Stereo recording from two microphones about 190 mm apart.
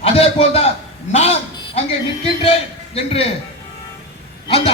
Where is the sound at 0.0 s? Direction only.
30° left (ahead or behind).